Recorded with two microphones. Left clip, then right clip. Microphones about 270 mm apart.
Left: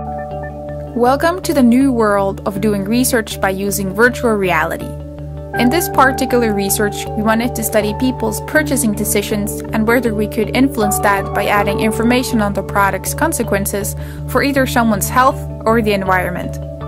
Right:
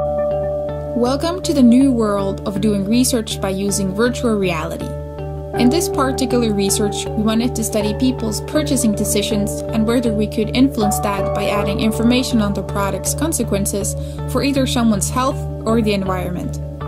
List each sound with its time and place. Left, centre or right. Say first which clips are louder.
1.0 s speech: left 6 dB; left